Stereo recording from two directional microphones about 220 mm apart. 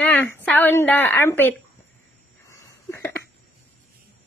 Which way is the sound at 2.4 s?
15° left (ahead or behind).